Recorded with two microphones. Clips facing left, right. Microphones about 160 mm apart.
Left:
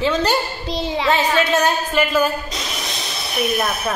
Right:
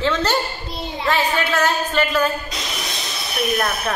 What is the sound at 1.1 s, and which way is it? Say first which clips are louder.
Speech: left 2 dB; 20° left (ahead or behind).